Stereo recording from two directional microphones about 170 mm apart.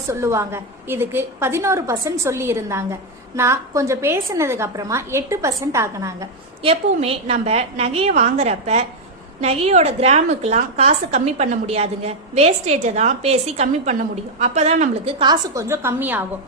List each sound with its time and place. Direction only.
0.1 s a woman's voice: 15° right (ahead or behind)
6.6 s a woman's voice: 35° right (ahead or behind)
15.2 s a woman's voice: 20° right (ahead or behind)